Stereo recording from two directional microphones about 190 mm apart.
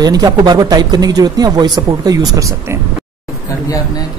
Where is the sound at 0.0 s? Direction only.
20° right (ahead or behind).